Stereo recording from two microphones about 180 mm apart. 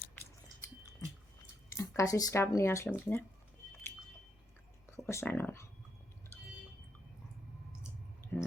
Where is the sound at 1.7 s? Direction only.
15° left (ahead or behind).